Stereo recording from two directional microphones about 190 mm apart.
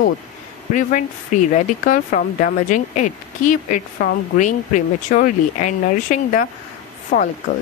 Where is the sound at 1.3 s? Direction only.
40° left (ahead or behind).